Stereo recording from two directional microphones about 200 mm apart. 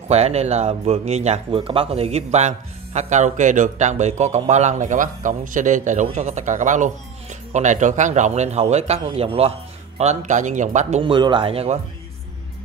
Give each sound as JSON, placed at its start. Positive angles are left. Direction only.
{"t": 0.1, "sound": "a man's voice", "side_deg": -30}